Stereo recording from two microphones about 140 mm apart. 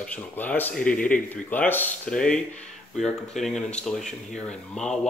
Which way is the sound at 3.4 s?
60° left (ahead or behind).